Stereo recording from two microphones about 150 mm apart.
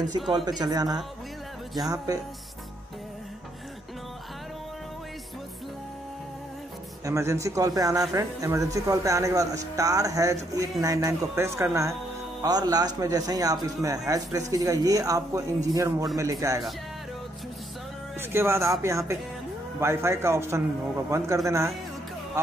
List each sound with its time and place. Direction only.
0.3 s speech: 25° right (ahead or behind)
7.1 s speech: 20° right (ahead or behind)
18.3 s a man's voice: 15° right (ahead or behind)